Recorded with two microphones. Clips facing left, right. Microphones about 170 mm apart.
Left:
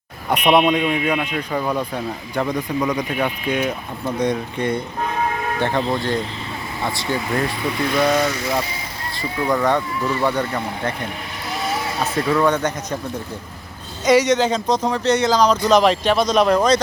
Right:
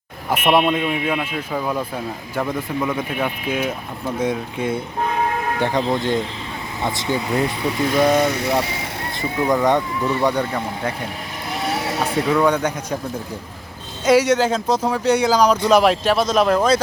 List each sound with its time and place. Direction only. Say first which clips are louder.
0.3 s speech: left 1 dB; 5° right (ahead or behind)
8.4 s speech: right 2 dB; 70° right (ahead or behind)
9.4 s speech: right 1 dB; 20° right (ahead or behind)
11.6 s vehicle: right 1 dB; 70° right (ahead or behind)
11.9 s speech: right 1 dB; centre (ahead or behind)
14.0 s speech: even; 10° right (ahead or behind)